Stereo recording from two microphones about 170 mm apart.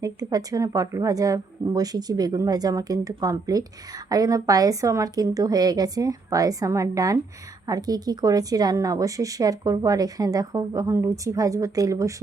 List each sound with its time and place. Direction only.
0.0 s a woman's voice: 20° right (ahead or behind)